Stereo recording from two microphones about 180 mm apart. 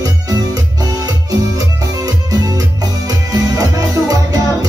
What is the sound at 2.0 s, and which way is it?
Music, 20° right (ahead or behind).